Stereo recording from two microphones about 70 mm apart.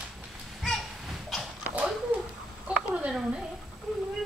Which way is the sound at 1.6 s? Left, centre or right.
Right.